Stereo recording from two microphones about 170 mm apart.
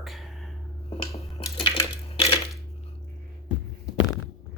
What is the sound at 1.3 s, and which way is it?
Crushing, 30° left (ahead or behind).